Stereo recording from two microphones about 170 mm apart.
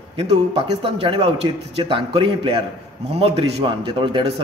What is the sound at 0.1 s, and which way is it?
A man's voice, 35° right (ahead or behind).